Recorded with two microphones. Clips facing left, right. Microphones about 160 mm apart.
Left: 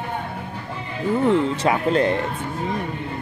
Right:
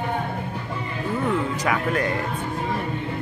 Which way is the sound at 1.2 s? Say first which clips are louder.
Left 5 dB; 30° left (ahead or behind).